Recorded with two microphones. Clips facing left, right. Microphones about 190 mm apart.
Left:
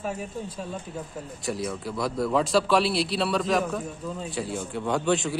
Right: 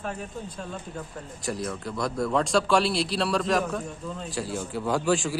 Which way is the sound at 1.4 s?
Centre (ahead or behind).